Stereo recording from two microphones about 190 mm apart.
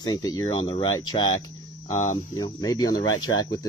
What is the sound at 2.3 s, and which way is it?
Speech, 20° left (ahead or behind).